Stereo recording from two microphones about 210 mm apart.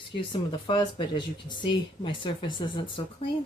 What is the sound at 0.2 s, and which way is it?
Speech, 25° left (ahead or behind).